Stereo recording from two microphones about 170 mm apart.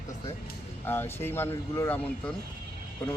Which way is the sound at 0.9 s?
15° left (ahead or behind).